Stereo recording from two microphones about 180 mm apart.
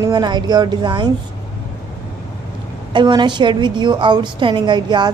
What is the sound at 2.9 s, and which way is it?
A woman's voice, 25° right (ahead or behind).